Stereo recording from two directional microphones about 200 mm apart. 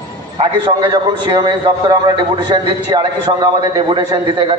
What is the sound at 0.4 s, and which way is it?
A man's voice, 25° right (ahead or behind).